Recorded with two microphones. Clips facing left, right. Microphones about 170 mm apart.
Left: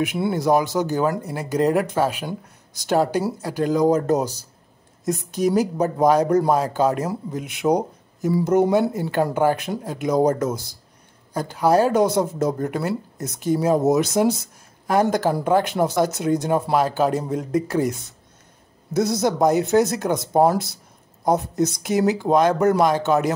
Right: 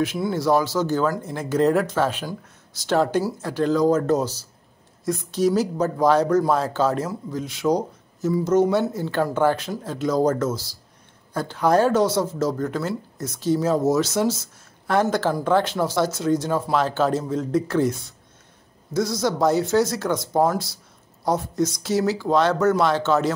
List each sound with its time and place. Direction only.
0.3 s speech: 15° left (ahead or behind)